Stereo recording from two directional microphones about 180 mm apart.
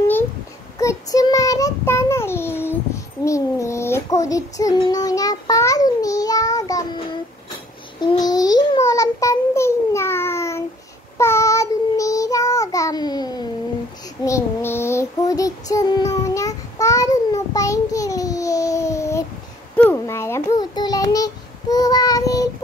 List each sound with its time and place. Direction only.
0.7 s child singing: 20° left (ahead or behind)
8.0 s babbling: 20° left (ahead or behind)
11.1 s child singing: 15° left (ahead or behind)
19.8 s babbling: 15° left (ahead or behind)